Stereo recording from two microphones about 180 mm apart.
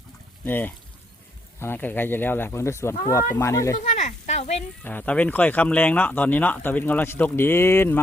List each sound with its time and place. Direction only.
0.4 s speech: 10° left (ahead or behind)
3.8 s sizzle: 40° left (ahead or behind)
4.8 s speech: 10° left (ahead or behind)